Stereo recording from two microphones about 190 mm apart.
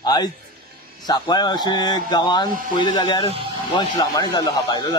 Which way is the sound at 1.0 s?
20° left (ahead or behind).